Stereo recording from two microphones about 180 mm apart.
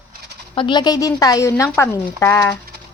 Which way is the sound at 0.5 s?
25° left (ahead or behind).